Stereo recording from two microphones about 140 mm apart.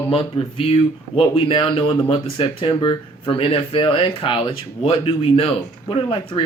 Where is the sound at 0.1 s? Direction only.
45° left (ahead or behind).